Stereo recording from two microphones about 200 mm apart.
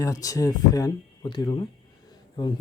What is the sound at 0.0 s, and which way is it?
Speech, 15° left (ahead or behind).